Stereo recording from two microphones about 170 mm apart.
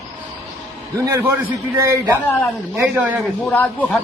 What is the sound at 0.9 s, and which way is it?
Speech, 15° right (ahead or behind).